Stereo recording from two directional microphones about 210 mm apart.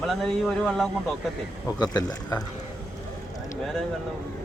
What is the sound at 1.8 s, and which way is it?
Speech, 20° left (ahead or behind).